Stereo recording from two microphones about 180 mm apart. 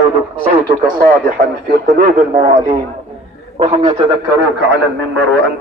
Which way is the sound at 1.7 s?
55° right (ahead or behind).